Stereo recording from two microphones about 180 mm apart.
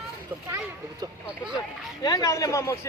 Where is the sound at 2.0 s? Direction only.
20° left (ahead or behind).